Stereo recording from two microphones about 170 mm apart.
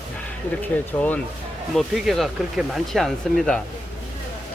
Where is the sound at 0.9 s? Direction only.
10° left (ahead or behind).